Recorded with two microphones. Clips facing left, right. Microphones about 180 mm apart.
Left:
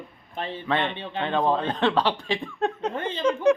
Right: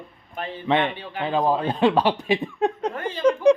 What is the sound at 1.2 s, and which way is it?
Speech, 5° right (ahead or behind).